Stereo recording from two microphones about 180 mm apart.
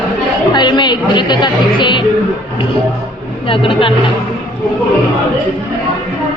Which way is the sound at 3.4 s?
30° left (ahead or behind).